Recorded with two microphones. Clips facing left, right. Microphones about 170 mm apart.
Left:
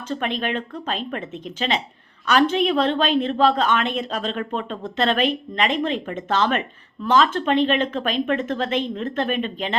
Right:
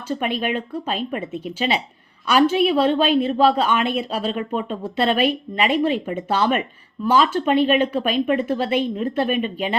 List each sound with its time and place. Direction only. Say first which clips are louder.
0.1 s a woman's voice: right 2 dB; 10° right (ahead or behind)